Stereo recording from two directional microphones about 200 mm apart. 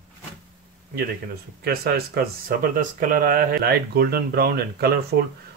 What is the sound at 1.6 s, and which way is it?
Speech, 50° right (ahead or behind).